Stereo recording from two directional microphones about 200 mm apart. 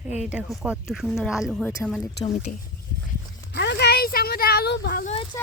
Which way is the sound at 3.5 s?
55° left (ahead or behind).